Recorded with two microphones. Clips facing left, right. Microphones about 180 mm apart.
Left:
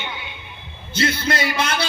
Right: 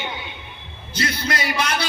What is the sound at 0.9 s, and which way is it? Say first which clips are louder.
Speech: left 3 dB; 25° left (ahead or behind).